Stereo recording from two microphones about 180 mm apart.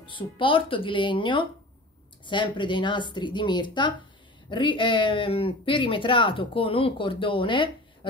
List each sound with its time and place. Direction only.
0.0 s speech: 30° left (ahead or behind)